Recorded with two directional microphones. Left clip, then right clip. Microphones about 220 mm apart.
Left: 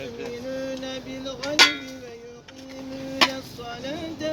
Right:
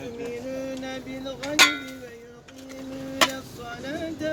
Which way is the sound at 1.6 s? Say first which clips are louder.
Left 1 dB; 20° right (ahead or behind).